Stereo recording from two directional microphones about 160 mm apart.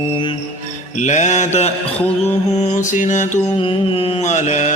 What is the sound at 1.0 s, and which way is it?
Mantra, 50° left (ahead or behind).